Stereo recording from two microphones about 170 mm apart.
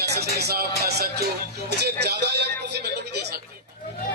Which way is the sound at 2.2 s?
80° right.